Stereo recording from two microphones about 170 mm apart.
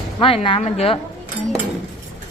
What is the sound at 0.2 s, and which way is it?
Speech, 30° left (ahead or behind).